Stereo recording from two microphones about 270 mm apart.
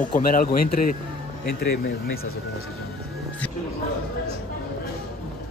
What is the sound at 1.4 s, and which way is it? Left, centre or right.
Speech, left.